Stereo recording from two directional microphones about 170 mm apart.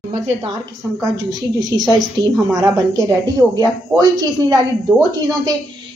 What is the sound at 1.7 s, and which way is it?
Speech, 20° right (ahead or behind).